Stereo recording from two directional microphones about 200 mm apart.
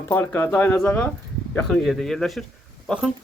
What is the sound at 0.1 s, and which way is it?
A man's voice, 10° left (ahead or behind).